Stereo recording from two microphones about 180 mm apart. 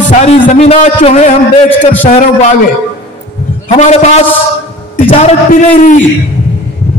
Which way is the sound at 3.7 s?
40° left (ahead or behind).